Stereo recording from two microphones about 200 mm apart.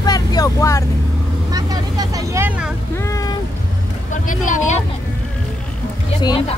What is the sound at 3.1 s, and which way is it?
Speech, 15° left (ahead or behind).